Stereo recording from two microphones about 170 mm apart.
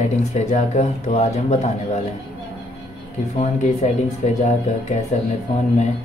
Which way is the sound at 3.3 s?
40° left (ahead or behind).